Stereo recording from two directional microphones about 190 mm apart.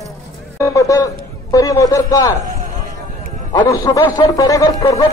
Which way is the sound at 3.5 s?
15° left (ahead or behind).